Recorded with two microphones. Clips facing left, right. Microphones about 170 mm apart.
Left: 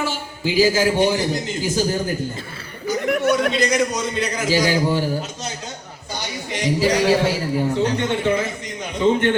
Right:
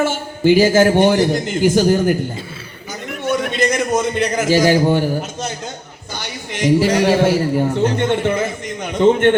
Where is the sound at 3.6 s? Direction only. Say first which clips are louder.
Right 3 dB; 55° right (ahead or behind).